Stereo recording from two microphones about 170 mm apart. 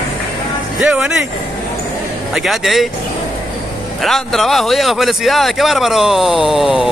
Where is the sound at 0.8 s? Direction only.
10° right (ahead or behind).